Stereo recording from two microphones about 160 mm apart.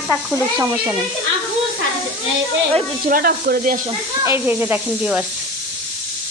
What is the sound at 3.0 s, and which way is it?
Speech, 65° right (ahead or behind).